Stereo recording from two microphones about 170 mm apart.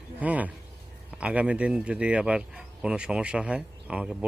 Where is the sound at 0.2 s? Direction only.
10° right (ahead or behind).